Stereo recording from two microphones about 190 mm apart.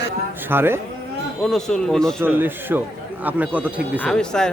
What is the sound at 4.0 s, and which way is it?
Speech, 5° left (ahead or behind).